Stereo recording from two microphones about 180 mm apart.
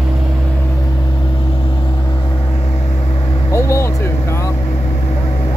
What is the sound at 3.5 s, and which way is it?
Vehicle, 15° left (ahead or behind).